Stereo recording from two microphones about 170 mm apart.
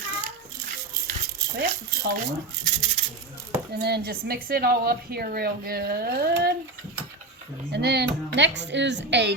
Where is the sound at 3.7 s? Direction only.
70° right (ahead or behind).